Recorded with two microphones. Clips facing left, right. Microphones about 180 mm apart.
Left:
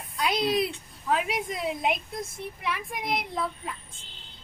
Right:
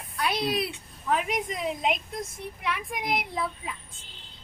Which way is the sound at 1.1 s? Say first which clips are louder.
Even; 5° left (ahead or behind).